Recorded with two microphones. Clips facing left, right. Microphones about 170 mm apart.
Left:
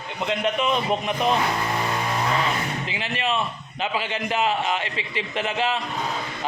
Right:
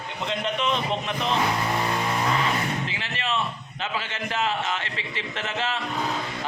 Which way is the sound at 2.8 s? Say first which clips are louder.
Left 4 dB; 15° left (ahead or behind).